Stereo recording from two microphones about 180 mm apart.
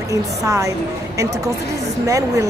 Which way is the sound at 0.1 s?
20° right (ahead or behind).